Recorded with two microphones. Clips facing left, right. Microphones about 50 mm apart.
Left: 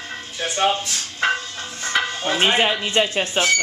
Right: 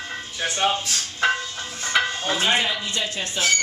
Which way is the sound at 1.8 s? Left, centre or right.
Centre.